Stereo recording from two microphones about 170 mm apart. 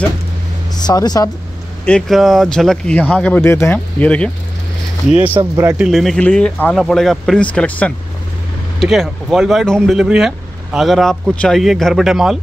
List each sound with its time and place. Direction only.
0.7 s speech: 25° left (ahead or behind)
1.9 s speech: 5° left (ahead or behind)
5.1 s a man's voice: 10° right (ahead or behind)
5.9 s speech: centre (ahead or behind)